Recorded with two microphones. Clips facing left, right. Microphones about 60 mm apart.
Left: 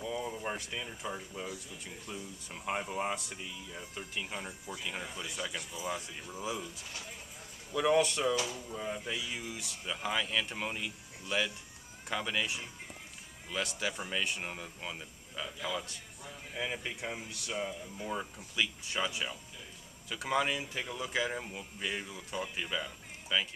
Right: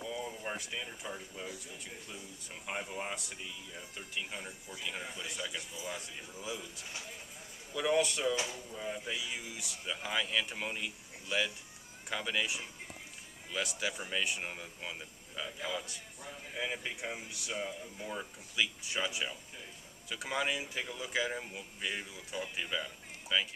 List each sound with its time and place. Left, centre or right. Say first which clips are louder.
0.0 s a sound: left 3 dB; centre
0.6 s speech: left 1 dB; centre
3.2 s speech: left 2 dB; centre
6.4 s speech: left 4 dB; centre
7.7 s speech: left 3 dB; centre